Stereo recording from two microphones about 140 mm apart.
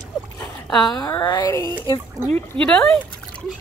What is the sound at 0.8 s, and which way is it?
Speech, 30° left (ahead or behind).